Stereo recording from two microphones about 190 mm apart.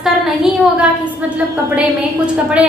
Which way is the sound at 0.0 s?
5° right (ahead or behind).